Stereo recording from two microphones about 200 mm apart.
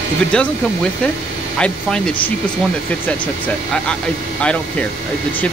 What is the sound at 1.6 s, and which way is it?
Speech, 5° left (ahead or behind).